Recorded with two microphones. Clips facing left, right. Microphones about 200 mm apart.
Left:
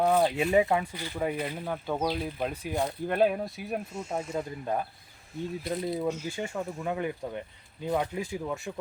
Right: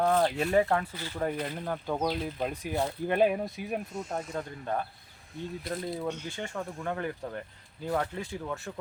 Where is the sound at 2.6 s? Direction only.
5° right (ahead or behind).